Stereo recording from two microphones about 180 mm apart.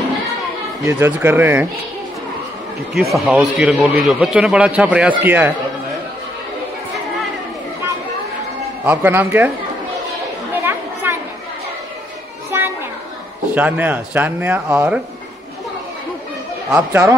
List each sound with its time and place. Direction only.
0.8 s speech: 15° right (ahead or behind)
2.9 s a man's voice: centre (ahead or behind)
8.8 s speech: 10° right (ahead or behind)
10.6 s chatter: 10° right (ahead or behind)
12.5 s children playing: 15° right (ahead or behind)
13.6 s speech: 10° right (ahead or behind)
16.7 s speech: 10° right (ahead or behind)